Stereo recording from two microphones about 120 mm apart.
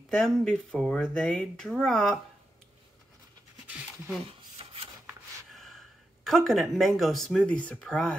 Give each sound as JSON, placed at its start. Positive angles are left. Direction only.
{"t": 0.1, "sound": "speech", "side_deg": 5}
{"t": 3.6, "sound": "pant", "side_deg": -10}
{"t": 4.6, "sound": "rub", "side_deg": -50}
{"t": 5.5, "sound": "a sound", "side_deg": 0}
{"t": 7.0, "sound": "speech", "side_deg": 0}